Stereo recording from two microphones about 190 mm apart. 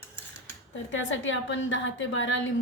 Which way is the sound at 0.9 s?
80° left.